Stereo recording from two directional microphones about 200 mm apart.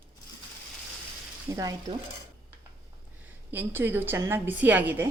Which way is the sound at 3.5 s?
10° right (ahead or behind).